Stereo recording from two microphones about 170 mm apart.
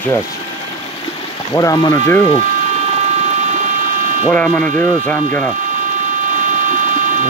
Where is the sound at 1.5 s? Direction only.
25° left (ahead or behind).